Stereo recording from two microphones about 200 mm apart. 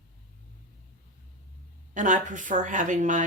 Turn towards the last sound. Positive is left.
turn(degrees=-40)  # may be behind; listen again after turning